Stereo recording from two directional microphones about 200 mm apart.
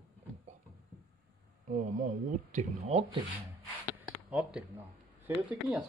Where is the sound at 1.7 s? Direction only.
40° right (ahead or behind).